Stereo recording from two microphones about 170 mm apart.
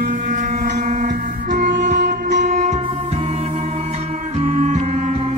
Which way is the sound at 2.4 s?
40° right (ahead or behind).